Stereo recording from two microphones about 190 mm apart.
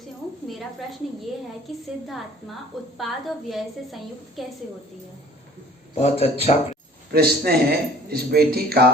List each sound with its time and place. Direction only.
1.7 s a woman's voice: centre (ahead or behind)
5.9 s speech: 35° left (ahead or behind)
7.1 s a man's voice: 55° right (ahead or behind)